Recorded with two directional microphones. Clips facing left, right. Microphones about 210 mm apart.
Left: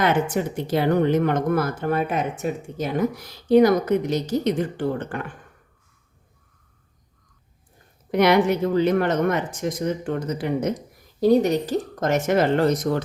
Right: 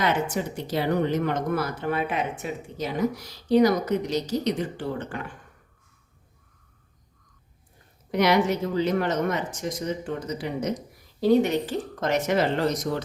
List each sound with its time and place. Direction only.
0.0 s speech: 55° left (ahead or behind)
8.1 s speech: 55° left (ahead or behind)
11.2 s speech: 40° left (ahead or behind)